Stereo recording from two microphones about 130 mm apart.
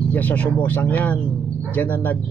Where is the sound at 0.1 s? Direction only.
10° left (ahead or behind).